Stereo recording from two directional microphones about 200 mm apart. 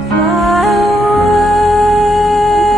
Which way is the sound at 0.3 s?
Centre (ahead or behind).